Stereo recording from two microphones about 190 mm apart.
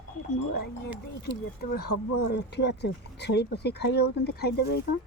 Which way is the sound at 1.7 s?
55° left (ahead or behind).